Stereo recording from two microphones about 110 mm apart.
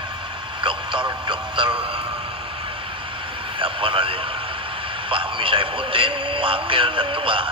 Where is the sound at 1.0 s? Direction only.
45° right (ahead or behind).